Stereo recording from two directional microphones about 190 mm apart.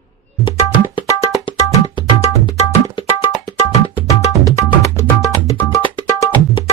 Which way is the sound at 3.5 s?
20° left (ahead or behind).